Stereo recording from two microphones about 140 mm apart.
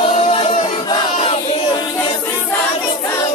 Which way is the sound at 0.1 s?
50° left (ahead or behind).